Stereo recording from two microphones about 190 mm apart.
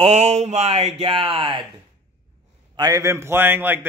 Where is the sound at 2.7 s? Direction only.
20° right (ahead or behind).